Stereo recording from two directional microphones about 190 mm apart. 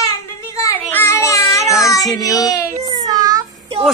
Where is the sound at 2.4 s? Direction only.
20° left (ahead or behind).